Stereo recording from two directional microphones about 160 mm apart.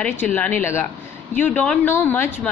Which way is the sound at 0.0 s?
10° left (ahead or behind).